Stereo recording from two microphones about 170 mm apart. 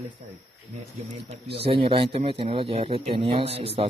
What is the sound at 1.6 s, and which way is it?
Speech, 30° right (ahead or behind).